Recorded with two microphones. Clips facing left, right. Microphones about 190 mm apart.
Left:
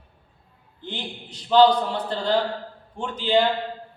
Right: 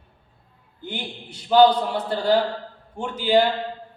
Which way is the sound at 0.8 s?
10° right (ahead or behind).